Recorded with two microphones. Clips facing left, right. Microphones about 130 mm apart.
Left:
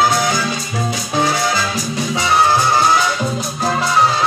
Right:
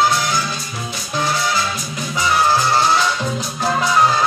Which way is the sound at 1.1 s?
80° left.